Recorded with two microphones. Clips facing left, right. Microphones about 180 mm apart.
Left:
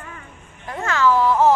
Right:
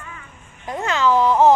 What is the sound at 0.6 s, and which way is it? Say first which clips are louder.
Speech: even; 15° right (ahead or behind).